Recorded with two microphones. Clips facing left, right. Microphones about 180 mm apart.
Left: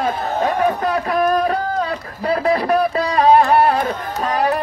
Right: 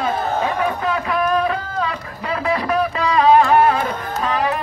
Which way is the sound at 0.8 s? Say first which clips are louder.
Left 3 dB; 40° left (ahead or behind).